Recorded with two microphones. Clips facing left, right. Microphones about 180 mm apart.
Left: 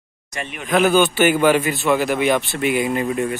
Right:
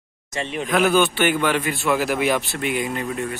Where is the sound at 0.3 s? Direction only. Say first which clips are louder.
Right 4 dB; 25° right (ahead or behind).